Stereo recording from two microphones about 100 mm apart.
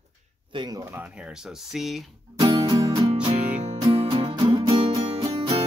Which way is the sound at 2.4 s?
65° right (ahead or behind).